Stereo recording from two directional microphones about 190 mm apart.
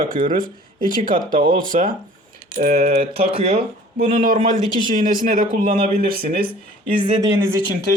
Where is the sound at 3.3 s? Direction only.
30° right (ahead or behind).